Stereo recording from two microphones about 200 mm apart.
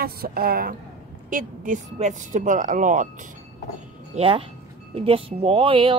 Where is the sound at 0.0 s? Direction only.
50° right (ahead or behind).